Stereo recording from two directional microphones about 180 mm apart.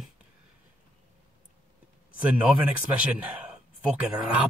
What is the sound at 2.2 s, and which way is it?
A man's voice, 5° right (ahead or behind).